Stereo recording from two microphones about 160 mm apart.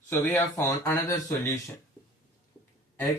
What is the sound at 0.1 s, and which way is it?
Speech, 15° left (ahead or behind).